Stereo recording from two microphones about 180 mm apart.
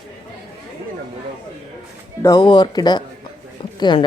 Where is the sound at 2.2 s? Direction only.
25° left (ahead or behind).